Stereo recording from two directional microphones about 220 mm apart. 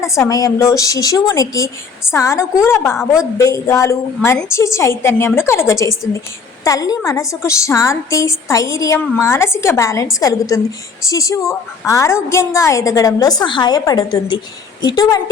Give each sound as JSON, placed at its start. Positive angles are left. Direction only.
{"t": 0.0, "sound": "a woman's voice", "side_deg": 15}